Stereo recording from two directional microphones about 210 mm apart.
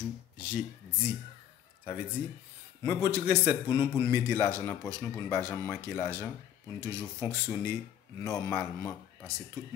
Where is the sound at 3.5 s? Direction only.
20° left (ahead or behind).